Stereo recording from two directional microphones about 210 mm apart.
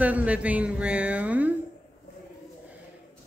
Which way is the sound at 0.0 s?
5° right (ahead or behind).